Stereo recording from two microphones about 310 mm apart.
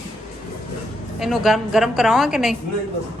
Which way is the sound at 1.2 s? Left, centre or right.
Centre.